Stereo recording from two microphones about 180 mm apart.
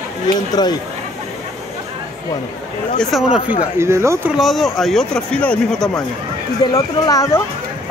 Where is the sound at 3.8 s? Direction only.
15° right (ahead or behind).